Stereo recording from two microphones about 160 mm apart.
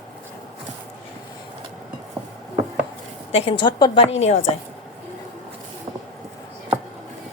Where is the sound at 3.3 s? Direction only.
35° left (ahead or behind).